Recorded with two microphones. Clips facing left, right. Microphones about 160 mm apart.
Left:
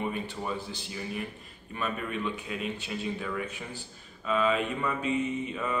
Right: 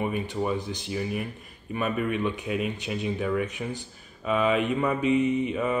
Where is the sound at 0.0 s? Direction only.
15° right (ahead or behind).